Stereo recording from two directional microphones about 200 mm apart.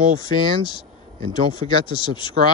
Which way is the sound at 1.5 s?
25° left (ahead or behind).